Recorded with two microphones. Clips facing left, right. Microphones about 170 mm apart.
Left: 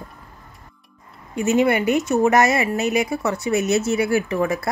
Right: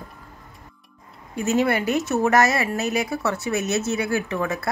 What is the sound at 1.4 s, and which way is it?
Speech, 15° left (ahead or behind).